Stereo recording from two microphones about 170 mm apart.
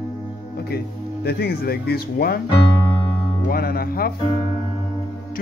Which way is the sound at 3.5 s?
60° left (ahead or behind).